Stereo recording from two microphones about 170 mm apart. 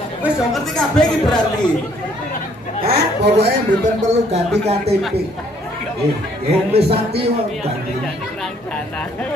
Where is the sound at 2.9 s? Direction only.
75° right (ahead or behind).